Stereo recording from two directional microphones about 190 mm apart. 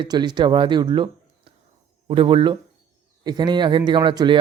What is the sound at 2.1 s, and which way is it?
Speech, 30° right (ahead or behind).